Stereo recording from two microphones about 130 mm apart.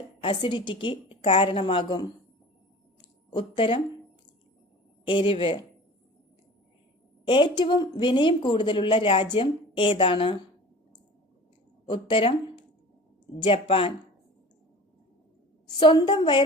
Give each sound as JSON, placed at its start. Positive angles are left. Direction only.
{"t": 0.2, "sound": "speech", "side_deg": 40}
{"t": 3.0, "sound": "a sound", "side_deg": 40}
{"t": 5.0, "sound": "speech", "side_deg": 40}
{"t": 7.3, "sound": "speech", "side_deg": 40}
{"t": 11.9, "sound": "speech", "side_deg": 40}
{"t": 15.6, "sound": "speech", "side_deg": 35}